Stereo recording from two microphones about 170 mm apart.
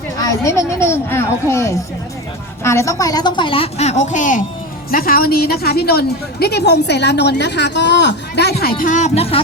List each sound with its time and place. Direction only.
0.2 s a woman's voice: 20° left (ahead or behind); by 4.4 s 50° left (ahead or behind)
4.9 s a woman's voice: 60° left (ahead or behind)
8.8 s a woman's voice: 45° left (ahead or behind)